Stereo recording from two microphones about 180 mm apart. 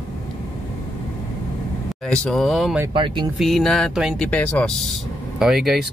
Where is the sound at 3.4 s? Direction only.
Centre (ahead or behind).